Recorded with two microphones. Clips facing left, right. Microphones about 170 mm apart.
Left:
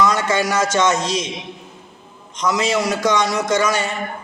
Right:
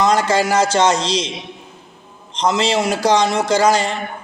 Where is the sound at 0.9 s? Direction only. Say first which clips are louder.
Right 1 dB; 80° right.